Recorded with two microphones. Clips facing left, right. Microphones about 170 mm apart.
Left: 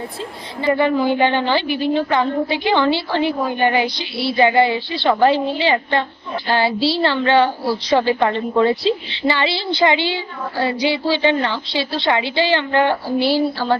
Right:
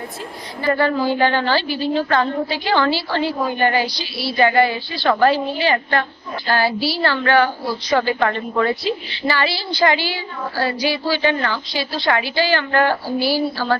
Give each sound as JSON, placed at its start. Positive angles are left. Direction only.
{"t": 0.6, "sound": "a woman's voice", "side_deg": 20}